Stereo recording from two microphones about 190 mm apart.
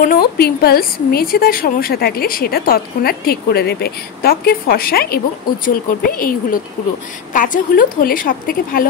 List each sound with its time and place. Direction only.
0.0 s a woman's voice: 55° left (ahead or behind)